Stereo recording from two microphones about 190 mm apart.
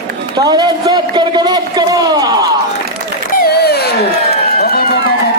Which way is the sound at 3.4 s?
55° left (ahead or behind).